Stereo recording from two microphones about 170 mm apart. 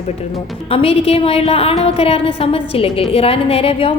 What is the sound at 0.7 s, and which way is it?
A woman's voice, 35° left (ahead or behind).